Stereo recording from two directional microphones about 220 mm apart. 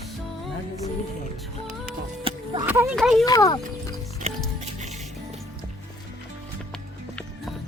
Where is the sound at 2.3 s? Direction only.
25° right (ahead or behind).